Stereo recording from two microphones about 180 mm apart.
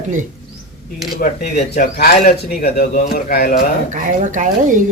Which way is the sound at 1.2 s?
55° left (ahead or behind).